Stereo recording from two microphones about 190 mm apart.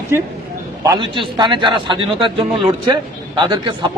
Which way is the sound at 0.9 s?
25° right (ahead or behind).